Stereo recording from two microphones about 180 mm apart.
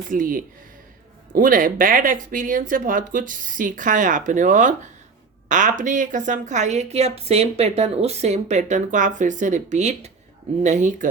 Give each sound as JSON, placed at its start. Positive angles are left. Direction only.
{"t": 0.1, "sound": "a woman's voice", "side_deg": -50}